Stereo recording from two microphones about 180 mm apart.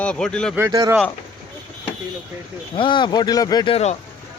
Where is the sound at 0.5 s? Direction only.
15° right (ahead or behind).